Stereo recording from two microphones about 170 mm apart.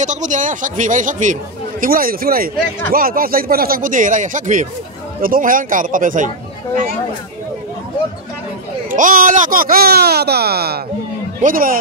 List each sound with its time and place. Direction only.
0.0 s speech: 45° right (ahead or behind)
8.9 s speech: 50° right (ahead or behind); by 10.8 s 70° right (ahead or behind)
11.4 s speech: 55° right (ahead or behind)